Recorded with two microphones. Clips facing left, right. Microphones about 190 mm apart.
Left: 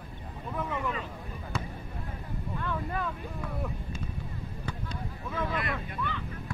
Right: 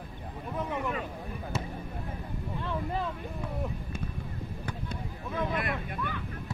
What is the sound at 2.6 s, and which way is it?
Vehicle, 25° right (ahead or behind).